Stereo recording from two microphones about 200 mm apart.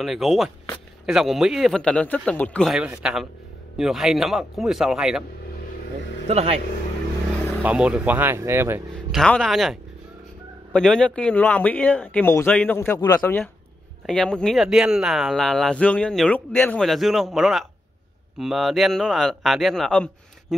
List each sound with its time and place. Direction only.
0.0 s speech: centre (ahead or behind)
6.2 s speech: 30° right (ahead or behind)
7.6 s speech: 5° right (ahead or behind)
9.2 s speech: centre (ahead or behind)